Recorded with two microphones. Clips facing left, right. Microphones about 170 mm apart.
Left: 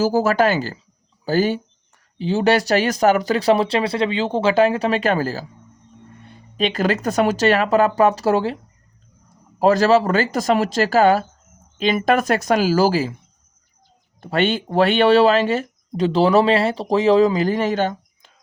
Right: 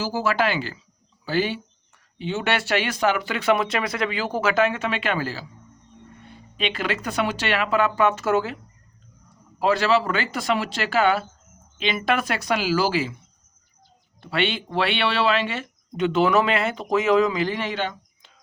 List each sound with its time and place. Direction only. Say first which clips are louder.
0.0 s speech: left 7 dB; 45° left (ahead or behind)
6.6 s speech: left 7 dB; 40° left (ahead or behind)
9.6 s speech: left 6 dB; 40° left (ahead or behind)
14.2 s speech: left 5 dB; 45° left (ahead or behind)